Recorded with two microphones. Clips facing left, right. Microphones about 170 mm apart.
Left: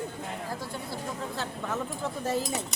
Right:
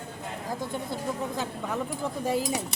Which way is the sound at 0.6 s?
20° right (ahead or behind).